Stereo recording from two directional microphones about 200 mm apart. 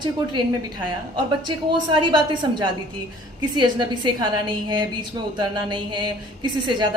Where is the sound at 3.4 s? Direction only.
20° right (ahead or behind).